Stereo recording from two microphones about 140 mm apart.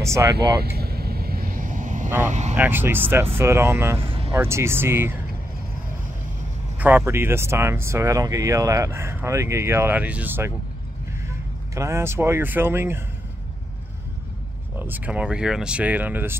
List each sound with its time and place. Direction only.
0.0 s speech: 20° right (ahead or behind)
0.7 s vehicle: 90° right; by 2.0 s 65° right (ahead or behind)
2.2 s speech: 55° right (ahead or behind)
2.5 s speech: 15° right (ahead or behind)
6.8 s speech: 15° right (ahead or behind)
11.7 s speech: 20° right (ahead or behind)
14.8 s speech: 10° right (ahead or behind)